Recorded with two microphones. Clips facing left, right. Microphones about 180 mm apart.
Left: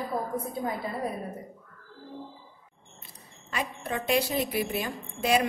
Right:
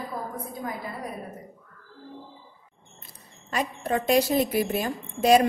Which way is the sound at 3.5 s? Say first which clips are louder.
Right 5 dB; 40° right (ahead or behind).